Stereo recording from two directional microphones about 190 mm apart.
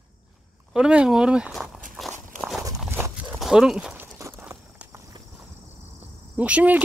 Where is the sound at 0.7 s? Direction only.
5° right (ahead or behind).